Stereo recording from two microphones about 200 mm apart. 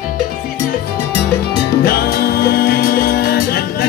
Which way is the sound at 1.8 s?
50° left (ahead or behind).